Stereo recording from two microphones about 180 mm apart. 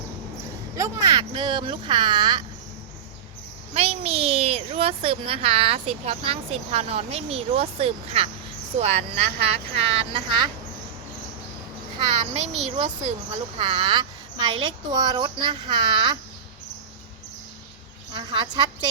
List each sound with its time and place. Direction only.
0.8 s speech: 20° right (ahead or behind)
3.8 s a child's voice: 35° right (ahead or behind)
11.9 s a child's voice: 35° right (ahead or behind)
18.1 s speech: 25° right (ahead or behind)